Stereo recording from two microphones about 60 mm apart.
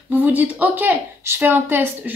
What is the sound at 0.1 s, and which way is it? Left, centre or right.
Speech, right.